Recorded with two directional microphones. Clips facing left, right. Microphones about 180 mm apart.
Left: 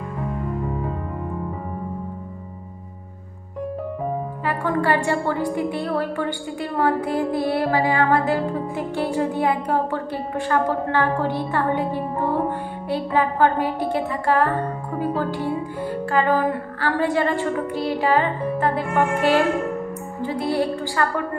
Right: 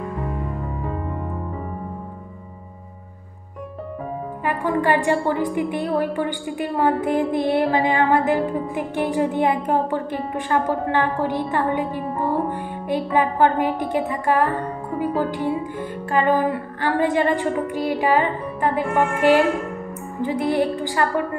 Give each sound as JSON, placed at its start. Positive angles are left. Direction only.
{"t": 4.5, "sound": "a woman's voice", "side_deg": -15}